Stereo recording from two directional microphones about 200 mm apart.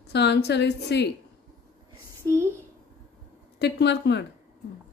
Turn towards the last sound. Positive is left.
turn(degrees=60)  # may be behind; listen again after turning